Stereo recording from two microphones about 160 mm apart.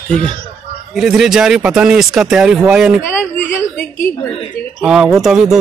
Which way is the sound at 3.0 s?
15° left (ahead or behind).